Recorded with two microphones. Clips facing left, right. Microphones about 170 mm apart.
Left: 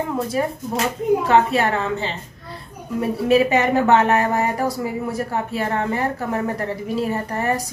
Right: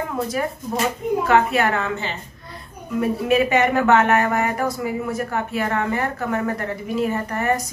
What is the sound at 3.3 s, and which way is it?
Speech, 35° left (ahead or behind).